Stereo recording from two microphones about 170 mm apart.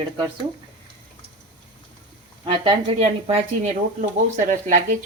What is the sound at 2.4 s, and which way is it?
Speech, 30° right (ahead or behind).